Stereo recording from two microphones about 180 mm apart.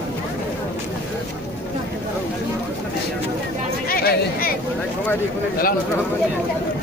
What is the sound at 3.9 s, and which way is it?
Chatter, 55° left (ahead or behind).